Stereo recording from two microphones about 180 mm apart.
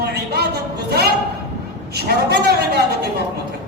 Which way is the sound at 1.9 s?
65° right (ahead or behind).